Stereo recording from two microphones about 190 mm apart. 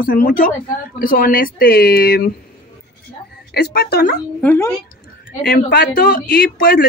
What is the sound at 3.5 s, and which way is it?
Speech, 55° left (ahead or behind).